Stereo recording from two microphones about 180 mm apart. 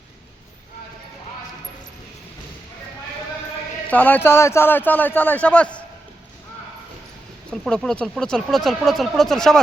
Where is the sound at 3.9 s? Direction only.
10° left (ahead or behind).